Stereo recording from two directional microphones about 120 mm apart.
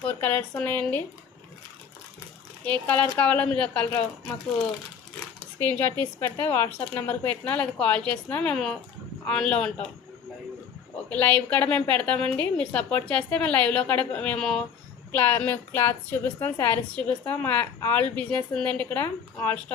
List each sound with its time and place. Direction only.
0.0 s a woman's voice: 15° left (ahead or behind)
2.6 s a woman's voice: 10° left (ahead or behind)
5.4 s a sound: 35° right (ahead or behind)
5.7 s a woman's voice: 15° left (ahead or behind)
11.1 s a woman's voice: 10° left (ahead or behind)
15.1 s a woman's voice: 15° left (ahead or behind)